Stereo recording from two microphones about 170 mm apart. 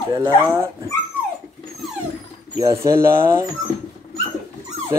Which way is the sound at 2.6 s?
15° right (ahead or behind).